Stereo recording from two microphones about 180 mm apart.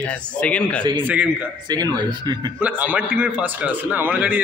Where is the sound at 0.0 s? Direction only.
10° left (ahead or behind).